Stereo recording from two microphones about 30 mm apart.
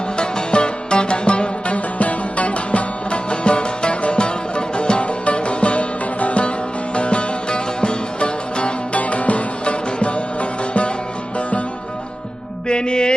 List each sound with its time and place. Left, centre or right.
0.2 s music: left
9.0 s music: left
12.6 s music: left